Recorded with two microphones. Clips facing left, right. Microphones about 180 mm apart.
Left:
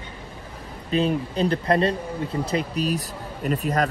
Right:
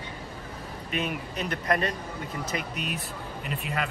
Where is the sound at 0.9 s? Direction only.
30° left (ahead or behind).